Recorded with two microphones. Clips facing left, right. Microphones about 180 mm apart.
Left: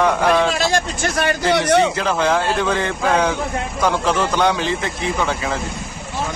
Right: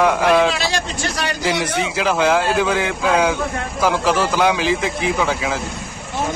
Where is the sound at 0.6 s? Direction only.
50° left (ahead or behind).